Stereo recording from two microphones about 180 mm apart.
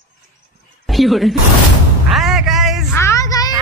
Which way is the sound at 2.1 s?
Centre (ahead or behind).